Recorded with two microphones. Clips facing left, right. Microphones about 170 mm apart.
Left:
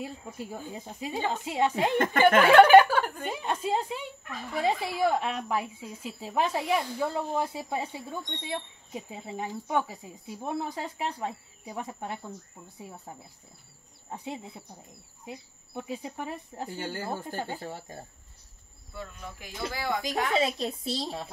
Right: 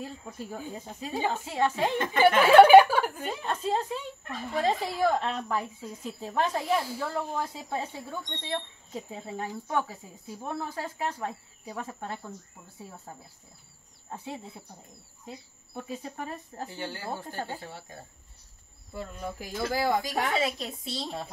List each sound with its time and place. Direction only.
0.0 s speech: 15° left (ahead or behind)
2.5 s speech: 10° right (ahead or behind)
3.3 s speech: 15° left (ahead or behind)
14.1 s speech: 15° left (ahead or behind)
16.8 s speech: 45° left (ahead or behind)
18.9 s speech: 40° right (ahead or behind)
20.0 s a woman's voice: 20° left (ahead or behind)